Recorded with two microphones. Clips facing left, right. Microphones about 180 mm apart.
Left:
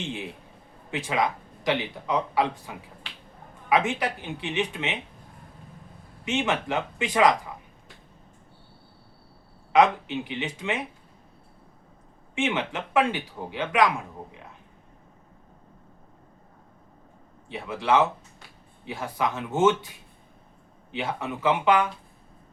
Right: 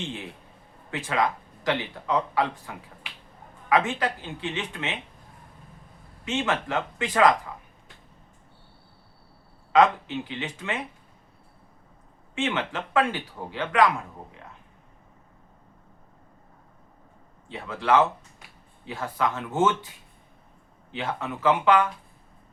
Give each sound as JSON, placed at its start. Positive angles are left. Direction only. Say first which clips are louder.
{"t": 0.0, "sound": "speech", "louder": "left 1 dB", "side_deg": 20}
{"t": 6.2, "sound": "speech", "louder": "left 1 dB", "side_deg": 20}
{"t": 9.7, "sound": "speech", "louder": "even", "side_deg": 15}
{"t": 12.3, "sound": "speech", "louder": "left 1 dB", "side_deg": 15}
{"t": 17.5, "sound": "speech", "louder": "right 1 dB", "side_deg": 15}
{"t": 20.9, "sound": "speech", "louder": "left 1 dB", "side_deg": 15}